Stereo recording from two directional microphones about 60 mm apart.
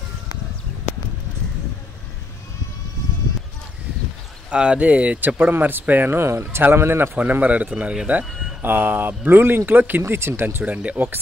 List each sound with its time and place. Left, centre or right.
4.5 s speech: centre
5.4 s speech: right
6.1 s speech: right
7.2 s speech: right
10.6 s speech: right